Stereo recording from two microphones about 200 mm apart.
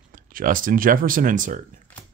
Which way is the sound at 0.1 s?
45° right (ahead or behind).